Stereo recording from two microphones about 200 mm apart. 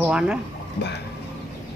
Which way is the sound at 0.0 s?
5° right (ahead or behind).